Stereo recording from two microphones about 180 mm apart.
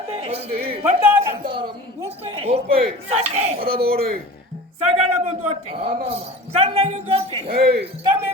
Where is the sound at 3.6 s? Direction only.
55° right (ahead or behind).